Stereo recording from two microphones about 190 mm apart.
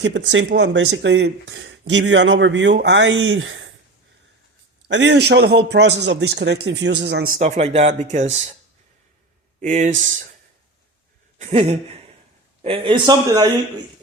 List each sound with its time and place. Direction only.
0.0 s speech: 70° right (ahead or behind); by 3.7 s 90° right
4.9 s a man's voice: 70° right (ahead or behind)
7.3 s speech: 40° right (ahead or behind)
9.6 s speech: 40° right (ahead or behind)
11.3 s a sound: 35° right (ahead or behind)
12.6 s a man's voice: 30° right (ahead or behind)